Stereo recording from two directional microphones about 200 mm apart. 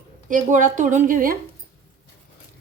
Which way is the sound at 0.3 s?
40° right (ahead or behind).